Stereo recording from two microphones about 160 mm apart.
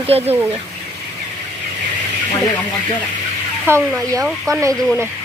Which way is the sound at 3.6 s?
15° right (ahead or behind).